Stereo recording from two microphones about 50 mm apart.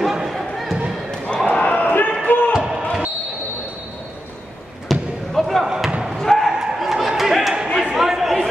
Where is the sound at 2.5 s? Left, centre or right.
Centre.